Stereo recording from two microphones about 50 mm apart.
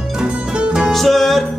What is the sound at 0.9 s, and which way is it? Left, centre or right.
Music, centre.